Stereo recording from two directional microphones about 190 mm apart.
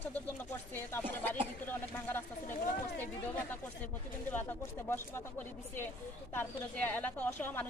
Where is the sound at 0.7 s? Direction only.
10° left (ahead or behind).